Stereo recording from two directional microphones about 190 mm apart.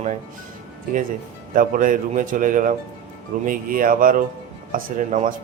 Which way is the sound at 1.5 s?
45° right (ahead or behind).